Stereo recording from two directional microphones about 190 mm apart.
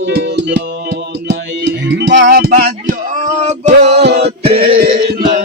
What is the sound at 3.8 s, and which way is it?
Music, 60° right (ahead or behind).